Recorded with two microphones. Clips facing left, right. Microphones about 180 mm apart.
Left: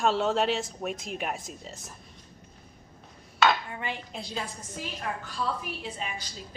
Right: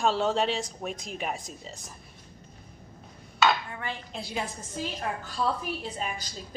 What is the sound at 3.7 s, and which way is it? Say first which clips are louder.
Dishes: left 1 dB; 15° left (ahead or behind).